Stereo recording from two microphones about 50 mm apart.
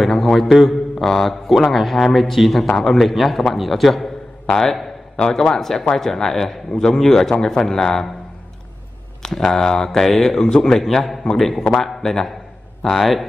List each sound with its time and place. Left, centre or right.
0.0 s a man's voice: centre
4.6 s a sound: centre
5.2 s a man's voice: centre
9.2 s a man's voice: centre